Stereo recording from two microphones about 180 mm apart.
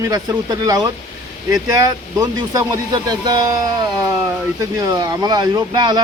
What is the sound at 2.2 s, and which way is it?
Speech, 20° right (ahead or behind).